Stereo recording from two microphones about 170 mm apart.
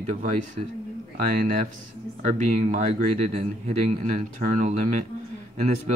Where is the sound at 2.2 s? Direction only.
45° right (ahead or behind).